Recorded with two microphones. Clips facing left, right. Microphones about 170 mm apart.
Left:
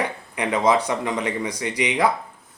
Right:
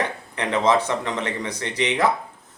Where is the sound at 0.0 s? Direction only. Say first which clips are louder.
Left 1 dB; 10° left (ahead or behind).